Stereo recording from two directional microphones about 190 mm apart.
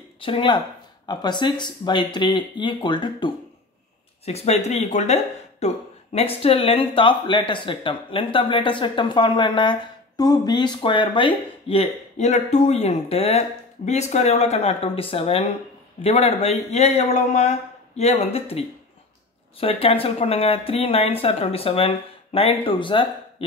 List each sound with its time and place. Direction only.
0.2 s speech: 25° left (ahead or behind)